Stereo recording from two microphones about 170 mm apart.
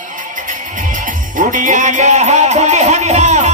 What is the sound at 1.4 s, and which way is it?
Music, 50° right (ahead or behind).